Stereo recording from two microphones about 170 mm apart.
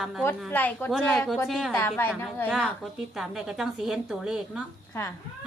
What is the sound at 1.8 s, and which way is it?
Speech, 15° left (ahead or behind).